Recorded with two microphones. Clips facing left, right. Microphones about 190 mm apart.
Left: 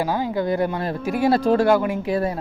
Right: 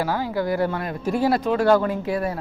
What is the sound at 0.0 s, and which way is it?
Speech, 20° left (ahead or behind).